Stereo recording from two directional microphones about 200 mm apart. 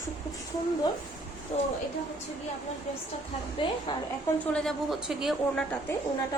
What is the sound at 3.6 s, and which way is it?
Speech, 25° left (ahead or behind).